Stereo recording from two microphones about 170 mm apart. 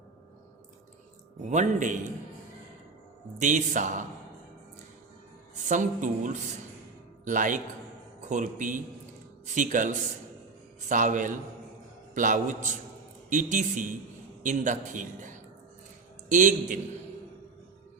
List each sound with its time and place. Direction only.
1.5 s a man's voice: 45° right (ahead or behind)
3.4 s a man's voice: 45° right (ahead or behind)
5.6 s a man's voice: 45° right (ahead or behind)